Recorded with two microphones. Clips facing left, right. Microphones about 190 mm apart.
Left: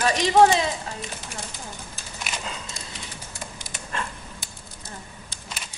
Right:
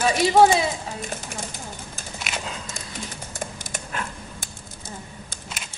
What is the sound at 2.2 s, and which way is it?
Horse, centre (ahead or behind).